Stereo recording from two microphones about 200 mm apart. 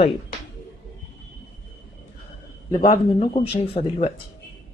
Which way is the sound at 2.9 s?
25° left (ahead or behind).